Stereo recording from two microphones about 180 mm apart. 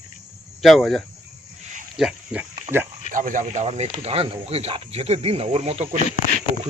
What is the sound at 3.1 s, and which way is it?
Speech, 45° right (ahead or behind).